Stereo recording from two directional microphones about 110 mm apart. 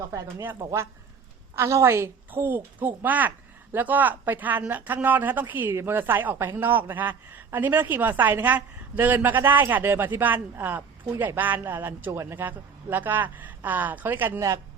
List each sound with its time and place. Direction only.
0.1 s a man's voice: 30° right (ahead or behind)